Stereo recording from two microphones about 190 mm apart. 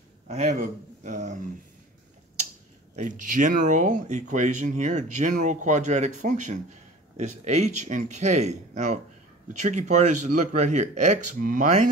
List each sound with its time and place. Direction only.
0.3 s speech: 35° right (ahead or behind)
3.0 s speech: 40° right (ahead or behind)